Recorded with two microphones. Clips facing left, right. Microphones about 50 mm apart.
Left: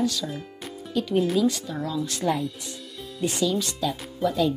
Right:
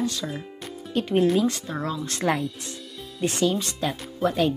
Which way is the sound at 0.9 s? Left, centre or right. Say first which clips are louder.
Right 2 dB; right.